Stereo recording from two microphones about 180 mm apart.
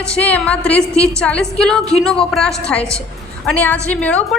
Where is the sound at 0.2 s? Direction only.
10° left (ahead or behind).